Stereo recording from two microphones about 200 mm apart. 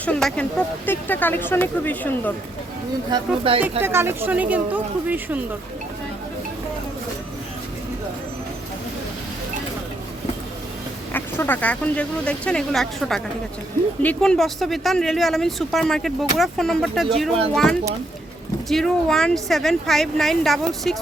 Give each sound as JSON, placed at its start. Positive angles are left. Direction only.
{"t": 0.0, "sound": "speech", "side_deg": 5}
{"t": 3.1, "sound": "speech", "side_deg": -25}
{"t": 3.6, "sound": "speech", "side_deg": -10}
{"t": 11.1, "sound": "speech", "side_deg": 10}